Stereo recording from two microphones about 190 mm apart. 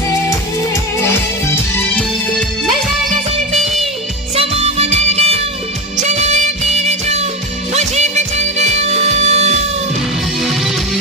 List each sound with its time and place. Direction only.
4.4 s music: 35° right (ahead or behind)
10.4 s music: centre (ahead or behind)